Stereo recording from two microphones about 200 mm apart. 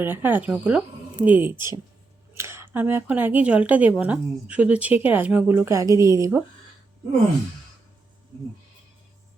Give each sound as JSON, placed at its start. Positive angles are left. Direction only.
{"t": 0.0, "sound": "speech", "side_deg": -10}